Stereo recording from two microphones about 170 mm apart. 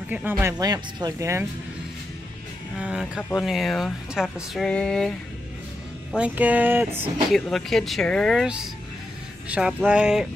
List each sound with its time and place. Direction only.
0.1 s speech: 10° right (ahead or behind)
2.7 s speech: 5° right (ahead or behind)
6.1 s speech: 10° right (ahead or behind)
7.2 s speech: centre (ahead or behind)